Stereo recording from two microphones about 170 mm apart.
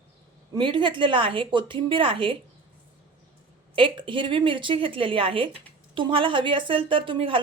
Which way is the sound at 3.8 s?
30° right (ahead or behind).